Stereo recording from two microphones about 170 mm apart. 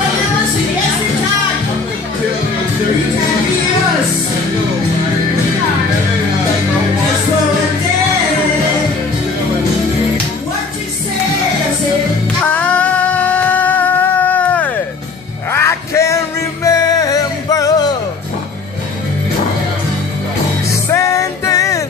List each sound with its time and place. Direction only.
12.5 s a sound: 10° left (ahead or behind)
15.5 s music: 15° left (ahead or behind)
20.9 s music: 20° left (ahead or behind)